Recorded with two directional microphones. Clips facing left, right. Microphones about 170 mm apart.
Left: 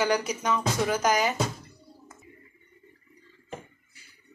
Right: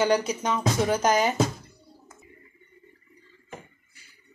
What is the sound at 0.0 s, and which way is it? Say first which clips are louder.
Speech: right 3 dB; 25° right (ahead or behind).